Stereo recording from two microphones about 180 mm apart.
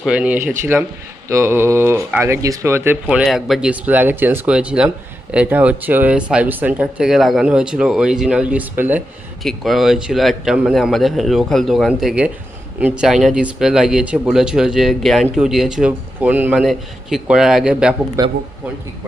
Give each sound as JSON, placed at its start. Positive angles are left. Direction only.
{"t": 0.0, "sound": "speech", "side_deg": -5}
{"t": 9.4, "sound": "speech", "side_deg": 0}
{"t": 18.2, "sound": "speech", "side_deg": -20}